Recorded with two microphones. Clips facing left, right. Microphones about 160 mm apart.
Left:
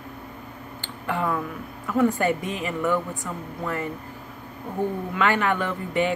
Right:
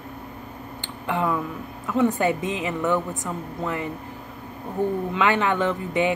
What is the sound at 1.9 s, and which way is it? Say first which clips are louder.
Speech: even; 20° right (ahead or behind).